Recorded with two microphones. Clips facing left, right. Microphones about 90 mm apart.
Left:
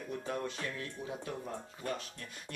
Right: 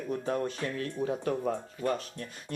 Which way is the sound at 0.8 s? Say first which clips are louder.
Right 10 dB; 55° right (ahead or behind).